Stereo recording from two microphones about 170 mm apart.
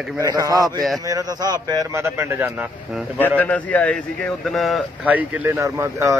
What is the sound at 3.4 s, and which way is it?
A man's voice, 10° left (ahead or behind).